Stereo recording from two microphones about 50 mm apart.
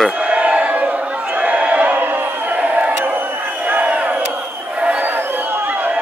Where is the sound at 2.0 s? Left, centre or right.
Right.